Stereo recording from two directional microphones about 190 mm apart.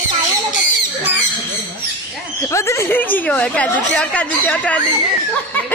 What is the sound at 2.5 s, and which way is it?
Speech, 15° left (ahead or behind).